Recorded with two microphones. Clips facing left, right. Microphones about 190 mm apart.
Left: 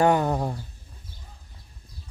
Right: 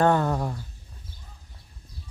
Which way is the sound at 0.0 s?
15° left (ahead or behind).